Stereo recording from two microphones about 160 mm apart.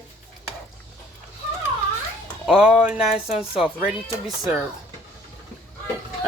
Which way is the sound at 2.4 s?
5° right (ahead or behind).